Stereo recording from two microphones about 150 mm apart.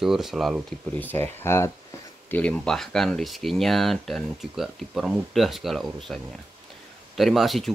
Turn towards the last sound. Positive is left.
turn(degrees=0)  # may be behind; listen again after turning